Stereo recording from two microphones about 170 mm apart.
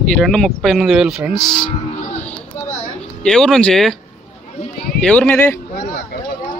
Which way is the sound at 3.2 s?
5° left (ahead or behind).